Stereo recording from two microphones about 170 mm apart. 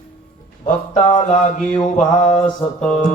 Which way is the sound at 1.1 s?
50° left (ahead or behind).